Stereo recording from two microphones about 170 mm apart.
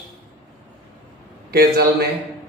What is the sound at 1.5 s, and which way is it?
Speech, 65° right (ahead or behind).